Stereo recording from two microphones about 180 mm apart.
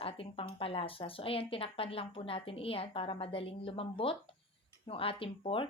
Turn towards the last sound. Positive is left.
turn(degrees=30)  # may be behind; listen again after turning